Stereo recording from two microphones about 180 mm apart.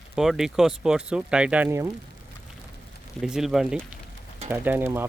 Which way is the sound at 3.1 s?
5° right (ahead or behind).